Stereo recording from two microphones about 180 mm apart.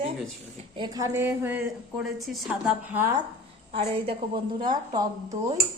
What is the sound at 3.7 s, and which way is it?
A woman's voice, 30° right (ahead or behind).